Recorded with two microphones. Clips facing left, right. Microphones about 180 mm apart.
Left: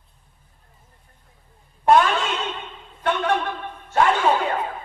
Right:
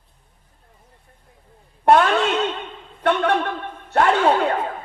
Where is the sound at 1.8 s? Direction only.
60° right (ahead or behind).